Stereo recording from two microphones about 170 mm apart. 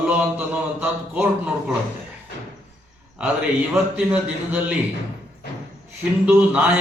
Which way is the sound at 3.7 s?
10° right (ahead or behind).